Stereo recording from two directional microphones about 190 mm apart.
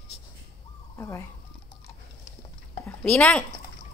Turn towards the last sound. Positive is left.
turn(degrees=5)  # may be behind; listen again after turning